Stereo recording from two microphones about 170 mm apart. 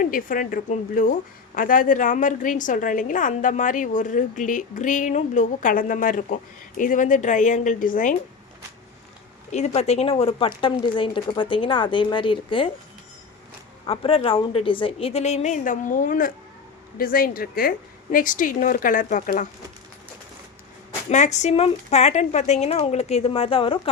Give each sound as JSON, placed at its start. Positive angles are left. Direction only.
{"t": 0.0, "sound": "a woman's voice", "side_deg": 55}
{"t": 9.5, "sound": "speech", "side_deg": 40}
{"t": 13.8, "sound": "a woman's voice", "side_deg": 35}
{"t": 21.1, "sound": "speech", "side_deg": 45}